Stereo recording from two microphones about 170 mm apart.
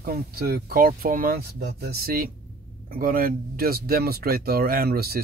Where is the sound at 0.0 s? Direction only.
60° right (ahead or behind).